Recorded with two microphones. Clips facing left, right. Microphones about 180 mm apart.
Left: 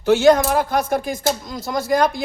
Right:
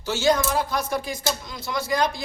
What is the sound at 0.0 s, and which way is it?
Speech, 60° left (ahead or behind).